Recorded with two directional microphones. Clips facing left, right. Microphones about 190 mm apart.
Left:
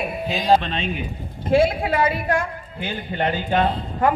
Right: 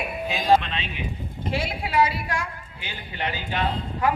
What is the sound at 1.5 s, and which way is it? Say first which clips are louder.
A man's voice: left 8 dB; 50° left (ahead or behind).